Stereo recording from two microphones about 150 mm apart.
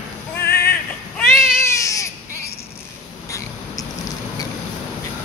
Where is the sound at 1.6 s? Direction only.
20° left (ahead or behind).